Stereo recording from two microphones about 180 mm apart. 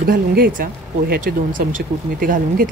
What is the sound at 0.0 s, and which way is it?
Speech, 55° right (ahead or behind).